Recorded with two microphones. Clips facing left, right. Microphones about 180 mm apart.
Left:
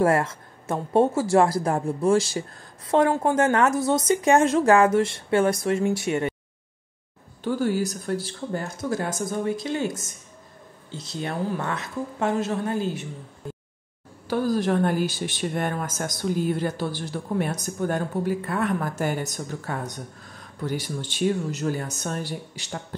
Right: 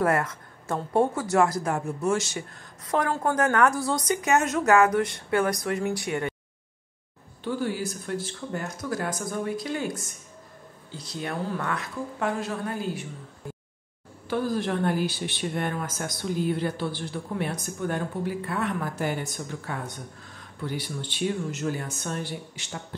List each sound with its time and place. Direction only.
0.0 s speech: 25° left (ahead or behind)
7.4 s speech: 40° left (ahead or behind); by 13.0 s 20° left (ahead or behind)
14.2 s speech: 40° left (ahead or behind)